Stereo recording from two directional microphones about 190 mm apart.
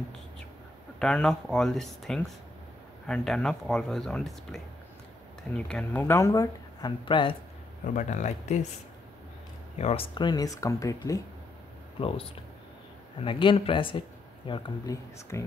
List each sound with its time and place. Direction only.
0.9 s speech: 5° left (ahead or behind); by 7.3 s 25° left (ahead or behind)
7.8 s speech: 40° left (ahead or behind)
9.8 s speech: 30° left (ahead or behind)
12.0 s speech: 30° left (ahead or behind)
14.5 s speech: 15° left (ahead or behind)